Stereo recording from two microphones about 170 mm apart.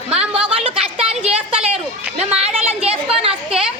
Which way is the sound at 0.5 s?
35° right (ahead or behind).